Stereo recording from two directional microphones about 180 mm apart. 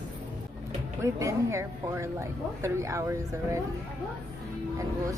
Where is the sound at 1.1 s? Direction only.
15° right (ahead or behind).